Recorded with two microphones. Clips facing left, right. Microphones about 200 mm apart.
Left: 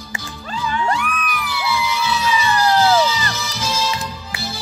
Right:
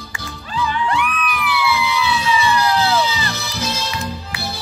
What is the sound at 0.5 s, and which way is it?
Music, 40° left (ahead or behind).